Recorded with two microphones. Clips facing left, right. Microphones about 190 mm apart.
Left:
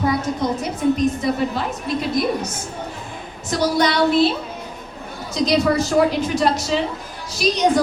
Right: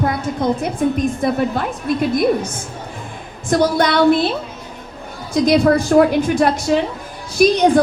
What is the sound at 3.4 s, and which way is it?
Speech, 55° right (ahead or behind).